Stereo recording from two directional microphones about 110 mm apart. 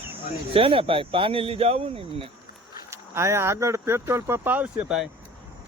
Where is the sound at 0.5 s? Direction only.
55° right (ahead or behind).